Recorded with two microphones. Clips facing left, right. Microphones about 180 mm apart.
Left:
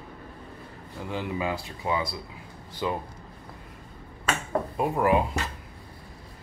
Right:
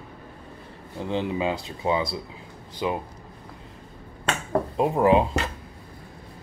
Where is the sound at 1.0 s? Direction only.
25° right (ahead or behind).